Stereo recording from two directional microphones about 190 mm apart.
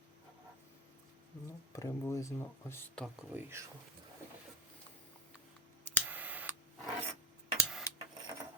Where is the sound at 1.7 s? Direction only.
15° left (ahead or behind).